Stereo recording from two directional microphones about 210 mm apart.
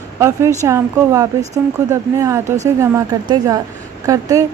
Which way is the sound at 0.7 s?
15° right (ahead or behind).